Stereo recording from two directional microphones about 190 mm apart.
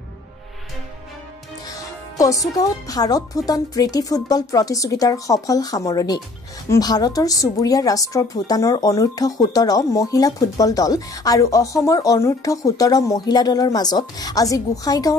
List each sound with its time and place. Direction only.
2.1 s speech: 15° left (ahead or behind)